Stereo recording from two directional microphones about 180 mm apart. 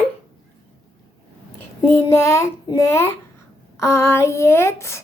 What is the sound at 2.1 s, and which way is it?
Speech, 15° left (ahead or behind).